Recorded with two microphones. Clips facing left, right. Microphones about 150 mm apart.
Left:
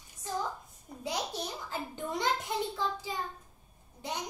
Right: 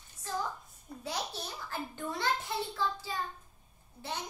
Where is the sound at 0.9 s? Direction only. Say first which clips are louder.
Left 2 dB; 15° left (ahead or behind).